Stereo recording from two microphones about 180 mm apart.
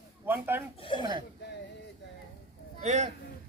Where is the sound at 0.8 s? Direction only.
30° left (ahead or behind).